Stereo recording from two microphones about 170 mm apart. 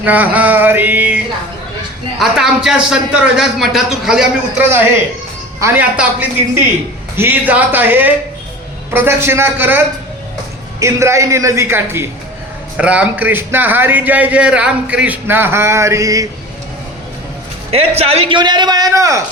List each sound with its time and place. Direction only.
0.0 s a man's voice: 10° right (ahead or behind)
5.5 s a man's voice: 15° right (ahead or behind)
17.7 s speech: 35° right (ahead or behind); by 19.2 s 20° right (ahead or behind)